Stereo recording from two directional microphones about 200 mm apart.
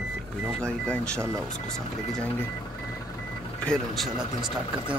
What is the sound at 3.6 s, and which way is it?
Speech, centre (ahead or behind).